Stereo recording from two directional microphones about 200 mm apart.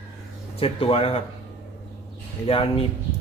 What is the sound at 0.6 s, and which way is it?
Speech, 30° left (ahead or behind).